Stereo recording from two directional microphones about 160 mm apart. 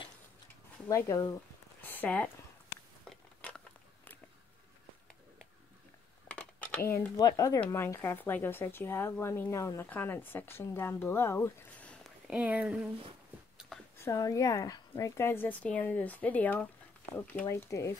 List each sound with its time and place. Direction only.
0.8 s speech: 20° left (ahead or behind)
3.1 s biting: 5° left (ahead or behind)
6.2 s a sound: 10° left (ahead or behind)
7.2 s speech: 20° left (ahead or behind); by 12.1 s 5° left (ahead or behind)
12.3 s speech: 10° right (ahead or behind)
13.9 s speech: 20° left (ahead or behind)